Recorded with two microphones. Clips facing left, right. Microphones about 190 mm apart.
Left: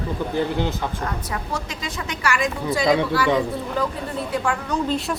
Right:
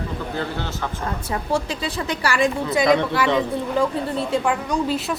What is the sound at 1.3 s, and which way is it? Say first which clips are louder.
A woman's voice: right 5 dB; 30° right (ahead or behind).